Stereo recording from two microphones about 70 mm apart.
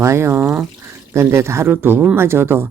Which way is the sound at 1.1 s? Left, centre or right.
Right.